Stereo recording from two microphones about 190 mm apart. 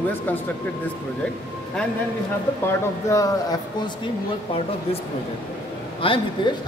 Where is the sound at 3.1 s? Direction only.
20° left (ahead or behind).